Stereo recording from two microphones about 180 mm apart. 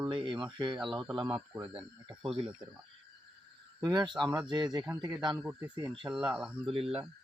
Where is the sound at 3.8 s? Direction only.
25° right (ahead or behind).